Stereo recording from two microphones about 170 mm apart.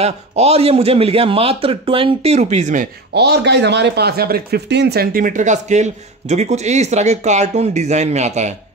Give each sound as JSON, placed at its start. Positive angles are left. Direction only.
{"t": 0.0, "sound": "a man's voice", "side_deg": -35}
{"t": 3.2, "sound": "speech", "side_deg": -80}